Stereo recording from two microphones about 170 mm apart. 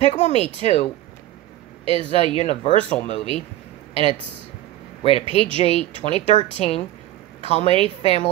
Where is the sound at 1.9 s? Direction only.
30° right (ahead or behind).